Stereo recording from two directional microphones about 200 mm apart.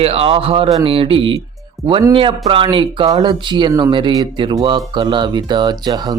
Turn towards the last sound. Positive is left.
turn(degrees=-20)  # may be behind; listen again after turning